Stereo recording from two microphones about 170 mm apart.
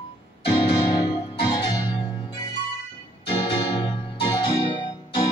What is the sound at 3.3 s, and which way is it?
Music, 25° left (ahead or behind).